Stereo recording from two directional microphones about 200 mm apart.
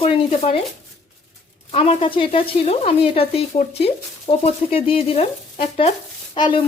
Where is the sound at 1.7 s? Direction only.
30° left (ahead or behind).